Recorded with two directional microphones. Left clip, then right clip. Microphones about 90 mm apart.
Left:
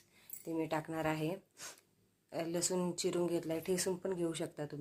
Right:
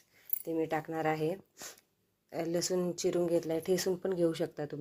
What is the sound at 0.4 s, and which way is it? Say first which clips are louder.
Speech: right 4 dB; 35° right (ahead or behind).